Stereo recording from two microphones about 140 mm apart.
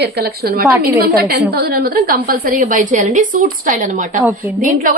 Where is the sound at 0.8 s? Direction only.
90° right.